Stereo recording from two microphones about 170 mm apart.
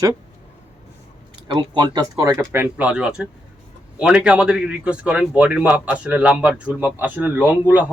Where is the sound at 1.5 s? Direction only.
25° right (ahead or behind).